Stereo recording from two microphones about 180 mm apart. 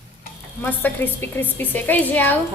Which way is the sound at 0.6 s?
10° left (ahead or behind).